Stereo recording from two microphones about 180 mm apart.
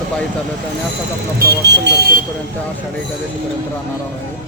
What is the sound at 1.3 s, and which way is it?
Speech, 70° right (ahead or behind).